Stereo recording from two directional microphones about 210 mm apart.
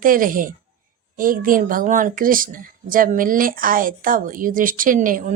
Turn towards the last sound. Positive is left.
turn(degrees=-40)  # may be behind; listen again after turning